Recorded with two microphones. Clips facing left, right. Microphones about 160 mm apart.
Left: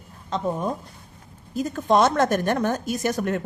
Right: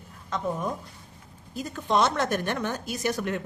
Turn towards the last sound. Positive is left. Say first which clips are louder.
# left 4 dB
turn(degrees=45)  # may be behind; listen again after turning